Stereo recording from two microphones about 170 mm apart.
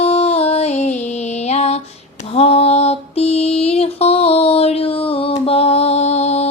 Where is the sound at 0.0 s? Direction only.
35° left (ahead or behind).